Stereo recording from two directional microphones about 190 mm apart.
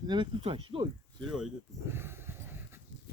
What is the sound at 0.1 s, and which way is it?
Speech, 25° right (ahead or behind).